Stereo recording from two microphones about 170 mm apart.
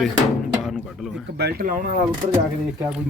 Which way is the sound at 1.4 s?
65° right (ahead or behind).